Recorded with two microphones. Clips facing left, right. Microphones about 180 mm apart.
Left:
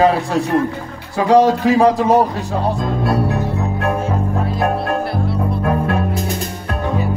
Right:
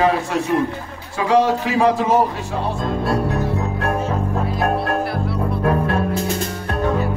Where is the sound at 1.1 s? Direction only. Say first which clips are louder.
Left 4 dB; 40° left (ahead or behind).